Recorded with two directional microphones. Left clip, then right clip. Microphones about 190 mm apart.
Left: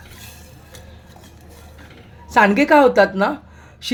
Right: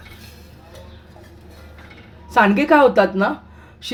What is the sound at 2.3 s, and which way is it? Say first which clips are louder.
A woman's voice: left 1 dB; 20° left (ahead or behind).